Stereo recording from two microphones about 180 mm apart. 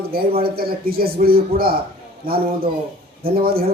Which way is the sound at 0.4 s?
55° right (ahead or behind).